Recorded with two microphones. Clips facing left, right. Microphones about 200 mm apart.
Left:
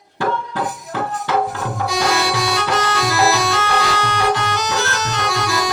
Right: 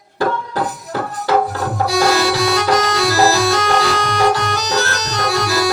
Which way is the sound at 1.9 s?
35° right (ahead or behind).